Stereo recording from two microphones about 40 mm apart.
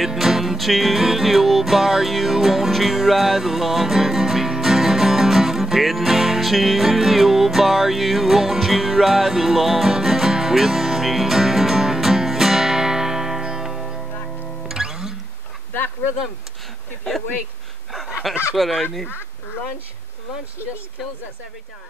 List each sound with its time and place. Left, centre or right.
0.0 s music: centre
17.9 s a sound: centre
18.6 s speech: centre